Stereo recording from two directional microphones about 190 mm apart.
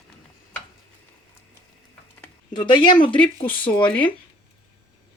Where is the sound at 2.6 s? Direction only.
25° left (ahead or behind).